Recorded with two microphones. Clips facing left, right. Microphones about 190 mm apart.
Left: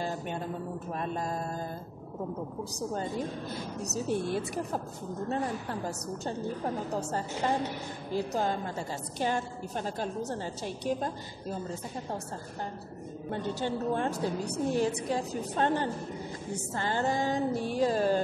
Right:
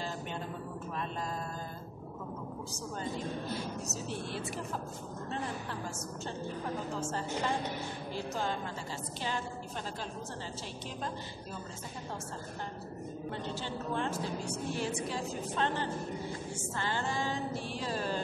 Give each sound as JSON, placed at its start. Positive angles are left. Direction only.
{"t": 0.9, "sound": "music", "side_deg": 45}
{"t": 3.8, "sound": "mantra", "side_deg": 45}
{"t": 5.3, "sound": "a woman's voice", "side_deg": 40}
{"t": 6.9, "sound": "mantra", "side_deg": 40}
{"t": 8.3, "sound": "a woman's voice", "side_deg": 40}
{"t": 13.3, "sound": "a woman's voice", "side_deg": 45}
{"t": 16.5, "sound": "mantra", "side_deg": 40}
{"t": 17.6, "sound": "a woman's voice", "side_deg": 45}